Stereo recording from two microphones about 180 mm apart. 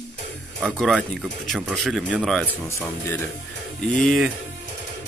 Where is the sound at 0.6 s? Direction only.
Centre (ahead or behind).